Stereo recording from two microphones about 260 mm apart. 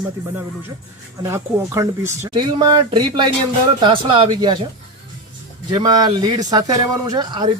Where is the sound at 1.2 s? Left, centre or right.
Centre.